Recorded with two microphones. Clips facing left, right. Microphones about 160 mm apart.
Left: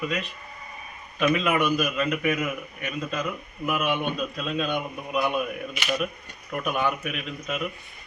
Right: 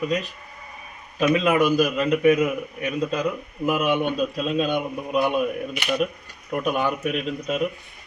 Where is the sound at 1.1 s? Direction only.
35° right (ahead or behind).